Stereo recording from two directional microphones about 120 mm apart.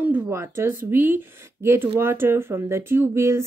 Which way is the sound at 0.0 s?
20° right (ahead or behind).